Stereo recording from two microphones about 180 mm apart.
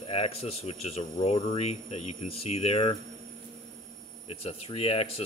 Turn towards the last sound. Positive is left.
turn(degrees=30)  # may be behind; listen again after turning